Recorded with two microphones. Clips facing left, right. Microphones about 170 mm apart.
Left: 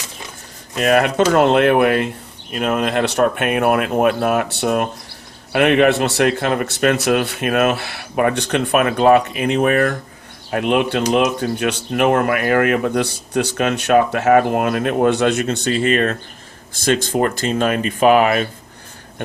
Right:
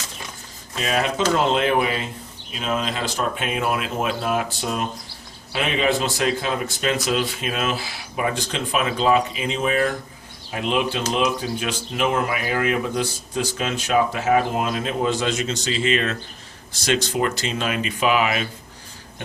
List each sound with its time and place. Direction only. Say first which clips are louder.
0.8 s speech: left 8 dB; 60° left (ahead or behind)